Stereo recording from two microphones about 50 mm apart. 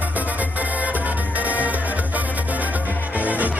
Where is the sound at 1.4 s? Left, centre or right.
Right.